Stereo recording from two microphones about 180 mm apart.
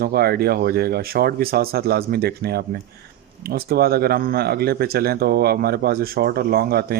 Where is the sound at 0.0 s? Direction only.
60° right (ahead or behind).